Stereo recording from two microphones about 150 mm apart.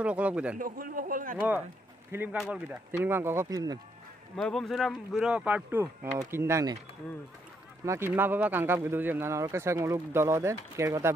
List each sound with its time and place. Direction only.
0.0 s speech: 10° right (ahead or behind)
0.6 s a man's voice: 70° right (ahead or behind)
2.3 s speech: 5° right (ahead or behind); by 3.8 s 25° right (ahead or behind)
4.4 s speech: centre (ahead or behind); by 6.8 s 20° right (ahead or behind)
7.8 s speech: 15° right (ahead or behind)